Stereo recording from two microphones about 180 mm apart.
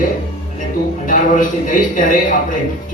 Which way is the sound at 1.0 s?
45° left (ahead or behind).